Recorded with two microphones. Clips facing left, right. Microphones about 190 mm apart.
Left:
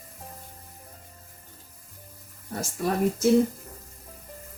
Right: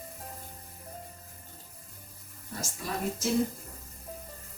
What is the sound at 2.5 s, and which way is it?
Speech, 60° left (ahead or behind).